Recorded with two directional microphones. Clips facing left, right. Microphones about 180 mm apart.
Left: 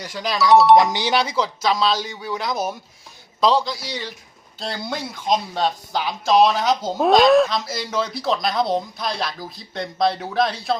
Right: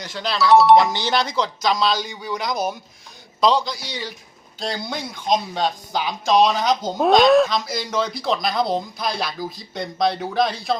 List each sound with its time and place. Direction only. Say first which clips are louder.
0.0 s speech: even; 10° left (ahead or behind)
0.5 s speech: even; centre (ahead or behind)
0.8 s speech: left 1 dB; 15° left (ahead or behind)